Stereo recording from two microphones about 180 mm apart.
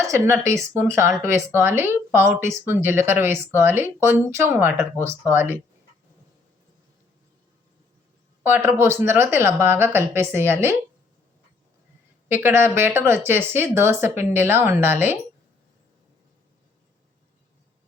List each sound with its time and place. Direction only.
0.1 s speech: 15° right (ahead or behind)
8.4 s speech: 10° right (ahead or behind)
12.3 s speech: 10° right (ahead or behind)